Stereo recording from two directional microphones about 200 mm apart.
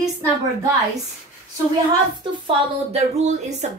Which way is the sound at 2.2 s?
30° right (ahead or behind).